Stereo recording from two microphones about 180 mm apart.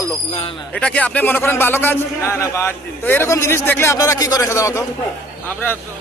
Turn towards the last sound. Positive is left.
turn(degrees=10)  # may be behind; listen again after turning